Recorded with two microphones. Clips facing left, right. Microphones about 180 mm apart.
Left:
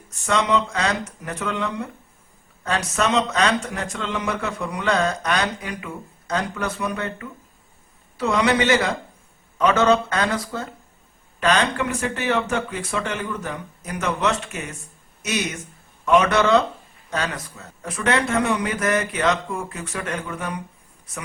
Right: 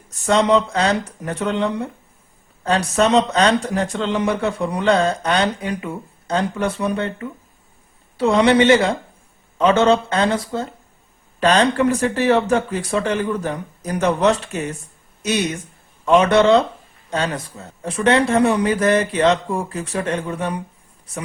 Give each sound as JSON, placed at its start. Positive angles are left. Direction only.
{"t": 0.3, "sound": "speech", "side_deg": -35}